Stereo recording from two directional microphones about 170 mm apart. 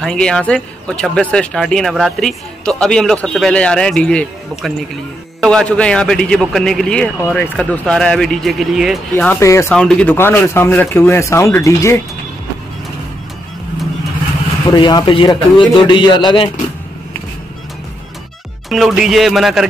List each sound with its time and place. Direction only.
0.0 s speech: 5° left (ahead or behind)
9.1 s speech: 15° left (ahead or behind)
9.8 s speech: 5° left (ahead or behind)
14.7 s a man's voice: 25° left (ahead or behind)
18.7 s speech: centre (ahead or behind)